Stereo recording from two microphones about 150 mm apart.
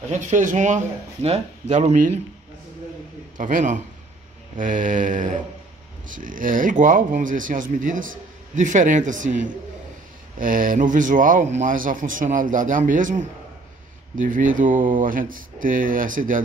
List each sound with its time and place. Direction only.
0.1 s speech: 55° right (ahead or behind)
3.3 s speech: 55° right (ahead or behind)